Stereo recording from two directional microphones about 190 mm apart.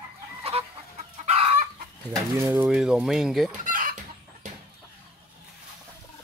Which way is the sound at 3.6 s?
45° right (ahead or behind).